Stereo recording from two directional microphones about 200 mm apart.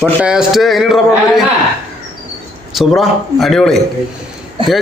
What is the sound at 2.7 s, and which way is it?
A man's voice, centre (ahead or behind).